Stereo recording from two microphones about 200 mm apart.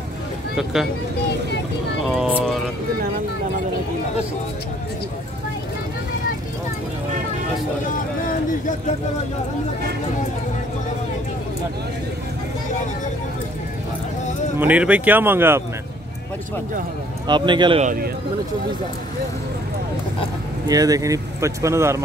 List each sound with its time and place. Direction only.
2.0 s speech: 5° right (ahead or behind)
7.8 s speech: 40° left (ahead or behind)
14.6 s speech: 5° right (ahead or behind)
17.3 s speech: 25° right (ahead or behind)
20.6 s speech: 20° right (ahead or behind)